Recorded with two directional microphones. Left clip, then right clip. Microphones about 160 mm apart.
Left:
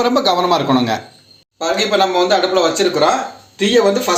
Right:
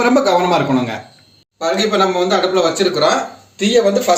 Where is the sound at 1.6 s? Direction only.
20° left (ahead or behind).